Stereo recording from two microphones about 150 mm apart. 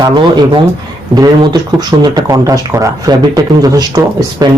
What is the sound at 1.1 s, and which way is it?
Speech, 25° right (ahead or behind).